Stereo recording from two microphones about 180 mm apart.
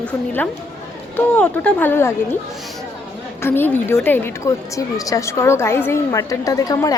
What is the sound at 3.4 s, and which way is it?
A woman's voice, 10° left (ahead or behind).